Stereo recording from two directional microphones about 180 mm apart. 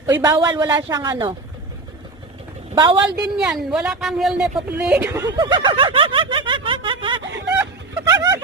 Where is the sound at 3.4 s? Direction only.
5° right (ahead or behind); by 7.6 s 20° right (ahead or behind).